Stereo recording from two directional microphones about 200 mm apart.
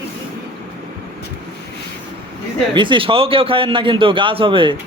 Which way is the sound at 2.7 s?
25° right (ahead or behind).